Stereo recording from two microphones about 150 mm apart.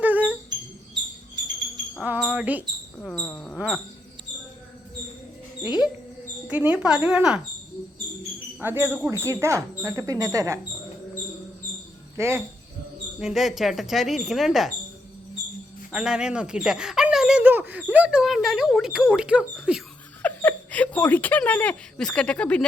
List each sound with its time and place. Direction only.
0.0 s a sound: 10° right (ahead or behind)
2.0 s speech: 5° right (ahead or behind)
3.0 s a sound: 10° left (ahead or behind)
6.5 s speech: 10° right (ahead or behind)
8.6 s speech: 15° right (ahead or behind)
12.1 s speech: 15° right (ahead or behind)
13.1 s speech: centre (ahead or behind)
15.9 s speech: 5° right (ahead or behind)
20.2 s speech: 10° left (ahead or behind)